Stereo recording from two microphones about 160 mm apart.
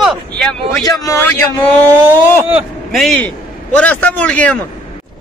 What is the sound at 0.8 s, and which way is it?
Speech, 20° left (ahead or behind).